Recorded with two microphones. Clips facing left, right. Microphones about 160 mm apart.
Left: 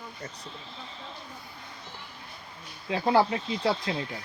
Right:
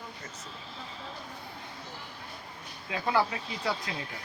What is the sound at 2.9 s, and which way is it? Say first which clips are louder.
Speech: left 5 dB; 30° left (ahead or behind).